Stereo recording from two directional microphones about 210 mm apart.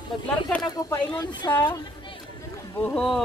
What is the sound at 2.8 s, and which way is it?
Speech, 5° left (ahead or behind).